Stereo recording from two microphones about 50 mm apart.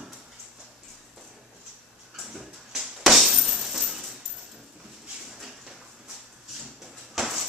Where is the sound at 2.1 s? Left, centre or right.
Centre.